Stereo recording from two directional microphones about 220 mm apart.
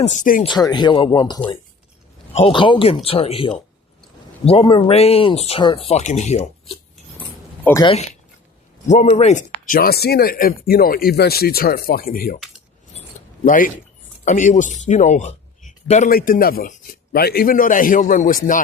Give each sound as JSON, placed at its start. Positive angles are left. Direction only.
{"t": 0.0, "sound": "speech", "side_deg": 35}
{"t": 0.4, "sound": "speech", "side_deg": 20}
{"t": 7.6, "sound": "speech", "side_deg": 10}
{"t": 8.9, "sound": "speech", "side_deg": 30}
{"t": 13.4, "sound": "a man's voice", "side_deg": 40}